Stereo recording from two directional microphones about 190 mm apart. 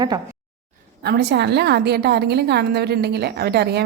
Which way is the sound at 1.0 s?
60° right (ahead or behind).